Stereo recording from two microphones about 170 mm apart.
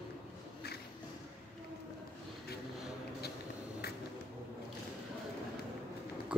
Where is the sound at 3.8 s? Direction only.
70° left (ahead or behind).